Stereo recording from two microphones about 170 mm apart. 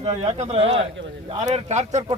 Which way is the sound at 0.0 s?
40° right (ahead or behind).